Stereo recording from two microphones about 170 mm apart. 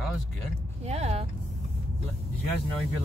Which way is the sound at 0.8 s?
40° right (ahead or behind).